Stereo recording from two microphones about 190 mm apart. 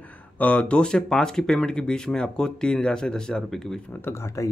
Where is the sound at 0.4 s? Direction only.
5° left (ahead or behind).